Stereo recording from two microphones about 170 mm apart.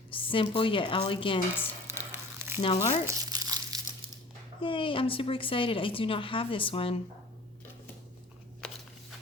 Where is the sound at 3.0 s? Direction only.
20° right (ahead or behind).